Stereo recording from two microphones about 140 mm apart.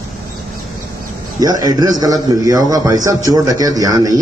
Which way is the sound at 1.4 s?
25° right (ahead or behind).